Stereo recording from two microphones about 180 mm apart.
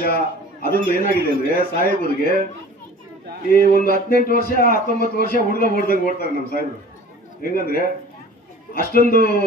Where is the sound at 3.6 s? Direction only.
50° right (ahead or behind).